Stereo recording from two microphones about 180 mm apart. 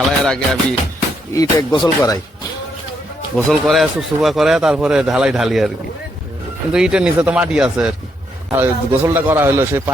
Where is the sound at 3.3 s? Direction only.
Centre (ahead or behind).